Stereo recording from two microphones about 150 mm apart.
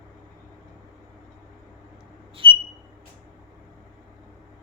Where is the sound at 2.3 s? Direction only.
35° right (ahead or behind).